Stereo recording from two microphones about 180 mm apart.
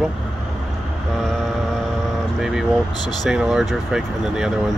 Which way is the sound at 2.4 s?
Centre (ahead or behind).